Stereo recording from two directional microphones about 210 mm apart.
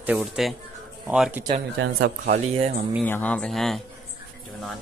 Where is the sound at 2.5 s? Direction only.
30° right (ahead or behind).